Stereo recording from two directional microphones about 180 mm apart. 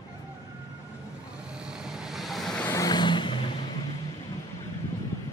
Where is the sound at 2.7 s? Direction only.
20° left (ahead or behind).